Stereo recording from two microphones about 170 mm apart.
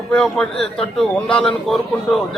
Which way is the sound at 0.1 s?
5° left (ahead or behind).